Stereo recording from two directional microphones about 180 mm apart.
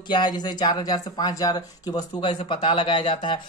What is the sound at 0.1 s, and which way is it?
Speech, 25° left (ahead or behind).